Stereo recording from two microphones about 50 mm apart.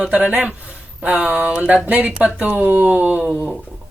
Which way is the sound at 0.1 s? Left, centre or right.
Right.